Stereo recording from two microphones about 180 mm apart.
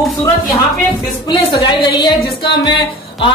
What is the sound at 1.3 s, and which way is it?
A woman's voice, 25° left (ahead or behind).